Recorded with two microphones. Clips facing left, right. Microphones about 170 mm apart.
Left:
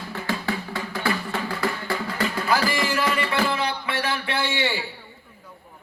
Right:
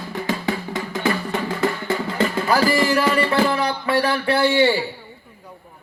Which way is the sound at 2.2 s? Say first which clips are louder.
Right 4 dB; 40° right (ahead or behind).